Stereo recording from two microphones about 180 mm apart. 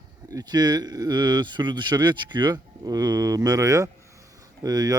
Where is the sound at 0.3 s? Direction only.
20° right (ahead or behind).